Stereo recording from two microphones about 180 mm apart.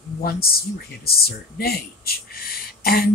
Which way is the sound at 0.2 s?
55° left (ahead or behind).